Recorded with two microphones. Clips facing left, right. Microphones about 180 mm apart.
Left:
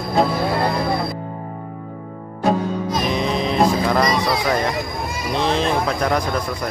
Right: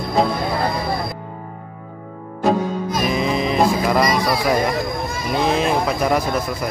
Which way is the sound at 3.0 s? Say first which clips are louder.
Right 2 dB; 5° right (ahead or behind).